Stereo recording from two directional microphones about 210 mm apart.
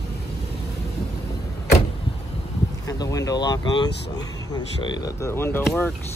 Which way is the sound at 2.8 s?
15° left (ahead or behind).